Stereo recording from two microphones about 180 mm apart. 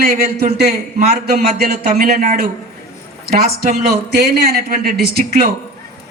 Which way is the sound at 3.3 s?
55° right (ahead or behind).